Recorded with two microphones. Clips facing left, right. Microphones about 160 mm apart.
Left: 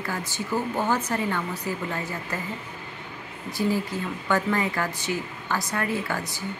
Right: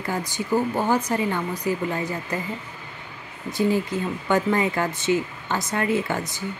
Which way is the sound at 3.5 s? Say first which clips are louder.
Right 4 dB; 20° right (ahead or behind).